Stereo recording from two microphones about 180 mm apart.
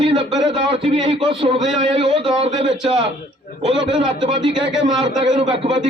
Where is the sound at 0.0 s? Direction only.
30° right (ahead or behind).